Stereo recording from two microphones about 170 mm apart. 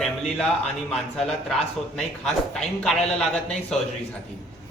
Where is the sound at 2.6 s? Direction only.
5° left (ahead or behind).